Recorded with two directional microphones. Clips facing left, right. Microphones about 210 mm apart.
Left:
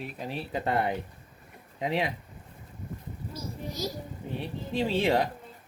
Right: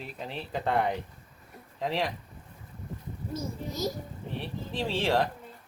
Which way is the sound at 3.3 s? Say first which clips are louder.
Right 2 dB; 50° right (ahead or behind).